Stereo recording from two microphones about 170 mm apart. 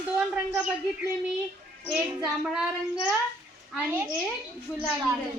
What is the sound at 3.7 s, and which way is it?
Speech, 10° right (ahead or behind).